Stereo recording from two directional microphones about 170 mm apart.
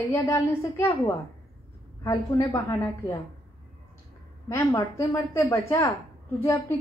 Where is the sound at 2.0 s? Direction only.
20° left (ahead or behind).